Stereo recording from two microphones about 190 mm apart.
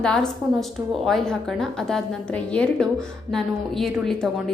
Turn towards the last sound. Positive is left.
turn(degrees=0)  # may be behind; listen again after turning